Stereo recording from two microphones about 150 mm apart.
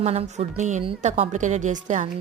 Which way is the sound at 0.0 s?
45° right (ahead or behind).